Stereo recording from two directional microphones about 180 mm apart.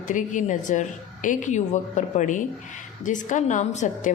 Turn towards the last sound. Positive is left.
turn(degrees=45)  # may be behind; listen again after turning